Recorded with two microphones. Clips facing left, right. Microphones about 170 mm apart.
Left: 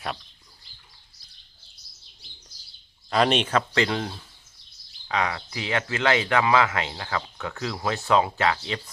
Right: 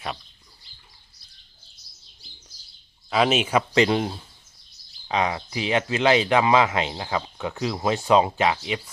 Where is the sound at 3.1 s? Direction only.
5° right (ahead or behind).